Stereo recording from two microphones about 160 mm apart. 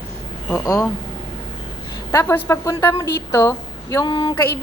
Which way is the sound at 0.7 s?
20° left (ahead or behind).